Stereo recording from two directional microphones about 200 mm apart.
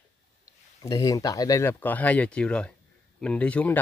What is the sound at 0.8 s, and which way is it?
Speech, 15° left (ahead or behind).